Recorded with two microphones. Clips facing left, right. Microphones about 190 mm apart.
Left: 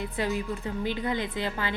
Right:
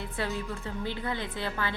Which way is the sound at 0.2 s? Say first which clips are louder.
Left 4 dB; 15° left (ahead or behind).